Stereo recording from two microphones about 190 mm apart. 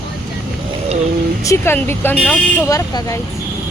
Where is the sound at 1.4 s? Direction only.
15° left (ahead or behind).